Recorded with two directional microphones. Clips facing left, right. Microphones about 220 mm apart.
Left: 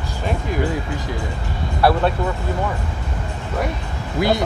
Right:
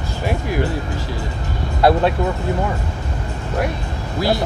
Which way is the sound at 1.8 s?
20° right (ahead or behind).